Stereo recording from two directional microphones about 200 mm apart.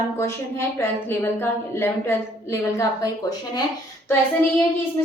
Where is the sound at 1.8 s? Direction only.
15° left (ahead or behind).